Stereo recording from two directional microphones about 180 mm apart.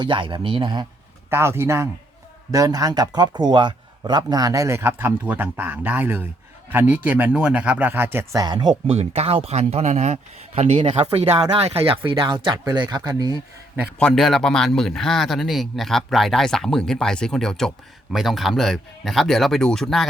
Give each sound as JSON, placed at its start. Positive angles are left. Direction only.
{"t": 0.0, "sound": "speech", "side_deg": -25}
{"t": 1.3, "sound": "speech", "side_deg": -15}
{"t": 14.0, "sound": "a man's voice", "side_deg": 5}